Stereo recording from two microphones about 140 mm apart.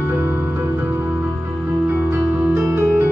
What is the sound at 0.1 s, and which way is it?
Music, 10° right (ahead or behind).